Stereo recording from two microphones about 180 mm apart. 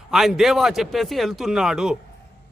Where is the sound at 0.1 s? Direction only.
Centre (ahead or behind).